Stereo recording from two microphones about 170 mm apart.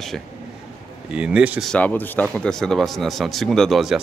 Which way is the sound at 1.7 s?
10° left (ahead or behind).